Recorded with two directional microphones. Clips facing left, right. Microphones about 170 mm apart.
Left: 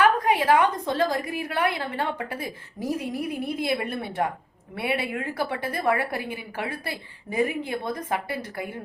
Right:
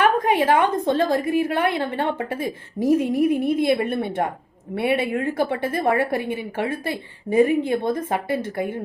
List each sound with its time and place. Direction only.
0.0 s a woman's voice: 25° right (ahead or behind)